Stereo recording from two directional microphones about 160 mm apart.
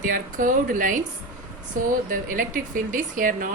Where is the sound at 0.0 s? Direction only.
55° right (ahead or behind).